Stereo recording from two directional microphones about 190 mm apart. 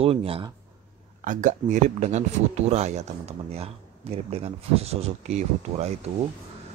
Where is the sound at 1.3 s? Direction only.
40° right (ahead or behind).